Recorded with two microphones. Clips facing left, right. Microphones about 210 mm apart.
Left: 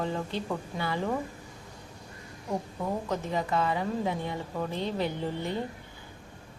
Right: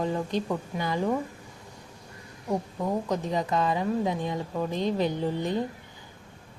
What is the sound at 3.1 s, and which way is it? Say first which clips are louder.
Speech: right 2 dB; 15° right (ahead or behind).